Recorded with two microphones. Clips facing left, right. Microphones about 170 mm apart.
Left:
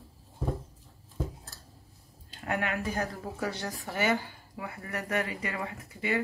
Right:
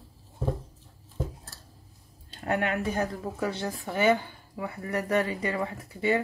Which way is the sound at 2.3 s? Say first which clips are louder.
Right 4 dB; 30° right (ahead or behind).